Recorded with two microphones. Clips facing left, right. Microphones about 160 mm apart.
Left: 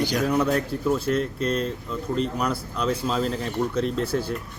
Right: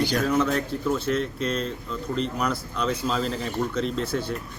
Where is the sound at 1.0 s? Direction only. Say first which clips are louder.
Left 2 dB; 40° left (ahead or behind).